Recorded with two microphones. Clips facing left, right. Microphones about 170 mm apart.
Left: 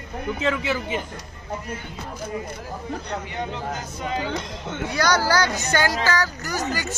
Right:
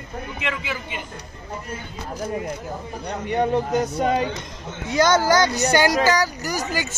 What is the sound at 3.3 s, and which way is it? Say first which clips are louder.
Speech: right 9 dB; 55° right (ahead or behind).